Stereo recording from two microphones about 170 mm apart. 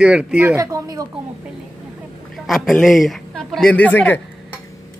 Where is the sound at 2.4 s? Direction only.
Centre (ahead or behind).